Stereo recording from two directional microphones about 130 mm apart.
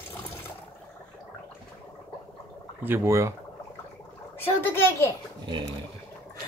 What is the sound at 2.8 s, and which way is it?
Speech, 20° right (ahead or behind).